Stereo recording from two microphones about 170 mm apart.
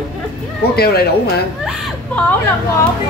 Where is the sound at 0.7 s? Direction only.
70° left (ahead or behind).